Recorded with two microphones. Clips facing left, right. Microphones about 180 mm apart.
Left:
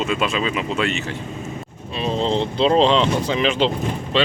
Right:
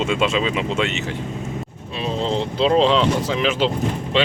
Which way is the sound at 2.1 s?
5° right (ahead or behind).